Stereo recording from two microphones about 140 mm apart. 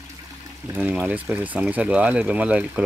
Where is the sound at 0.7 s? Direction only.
10° right (ahead or behind).